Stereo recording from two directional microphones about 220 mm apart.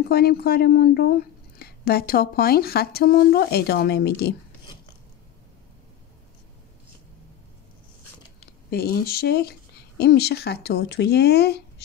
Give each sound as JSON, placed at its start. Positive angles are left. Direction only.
{"t": 0.1, "sound": "speech", "side_deg": 45}
{"t": 8.6, "sound": "speech", "side_deg": 45}